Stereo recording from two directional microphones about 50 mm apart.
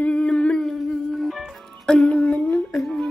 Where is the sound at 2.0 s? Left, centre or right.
Left.